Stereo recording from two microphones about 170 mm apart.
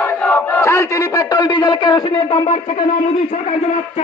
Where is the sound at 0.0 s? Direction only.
10° left (ahead or behind); by 2.2 s 30° left (ahead or behind).